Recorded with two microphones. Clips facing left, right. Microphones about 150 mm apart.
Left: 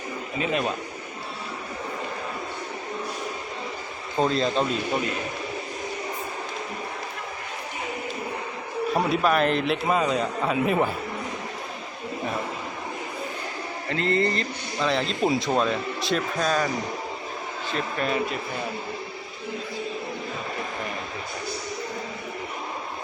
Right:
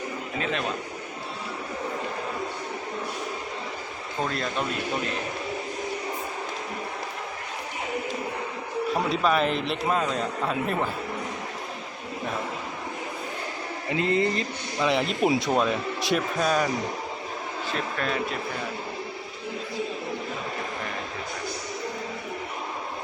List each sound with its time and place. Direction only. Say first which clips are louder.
0.3 s a man's voice: left 3 dB; 10° left (ahead or behind)
4.2 s speech: left 6 dB; 25° left (ahead or behind)
9.0 s a man's voice: left 2 dB; 5° left (ahead or behind)
13.9 s speech: even; 10° right (ahead or behind)
17.9 s speech: left 4 dB; 10° left (ahead or behind)